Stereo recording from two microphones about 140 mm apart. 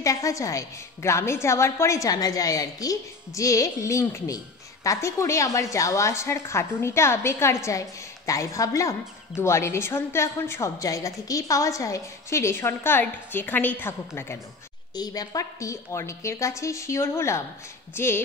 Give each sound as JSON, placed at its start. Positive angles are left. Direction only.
{"t": 0.0, "sound": "a woman's voice", "side_deg": 25}